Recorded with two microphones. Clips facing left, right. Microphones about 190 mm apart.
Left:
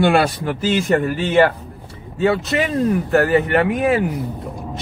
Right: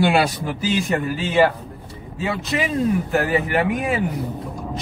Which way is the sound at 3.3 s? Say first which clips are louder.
Left 4 dB; centre (ahead or behind).